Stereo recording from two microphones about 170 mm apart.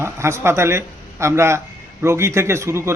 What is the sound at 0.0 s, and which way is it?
Speech, 15° right (ahead or behind).